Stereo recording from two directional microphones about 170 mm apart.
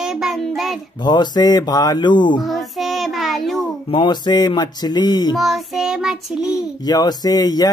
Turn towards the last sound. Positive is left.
turn(degrees=20)  # may be behind; listen again after turning